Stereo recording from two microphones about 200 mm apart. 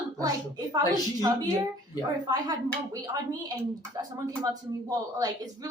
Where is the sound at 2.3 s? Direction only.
20° right (ahead or behind).